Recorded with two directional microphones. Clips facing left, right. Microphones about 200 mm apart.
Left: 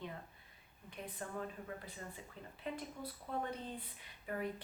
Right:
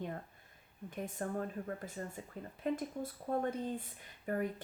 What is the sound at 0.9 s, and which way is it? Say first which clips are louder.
Speech: right 7 dB; 45° right (ahead or behind).